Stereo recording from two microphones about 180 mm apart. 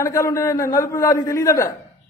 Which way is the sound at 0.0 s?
15° left (ahead or behind).